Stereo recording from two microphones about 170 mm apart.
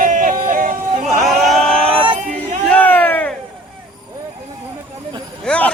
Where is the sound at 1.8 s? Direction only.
30° right (ahead or behind).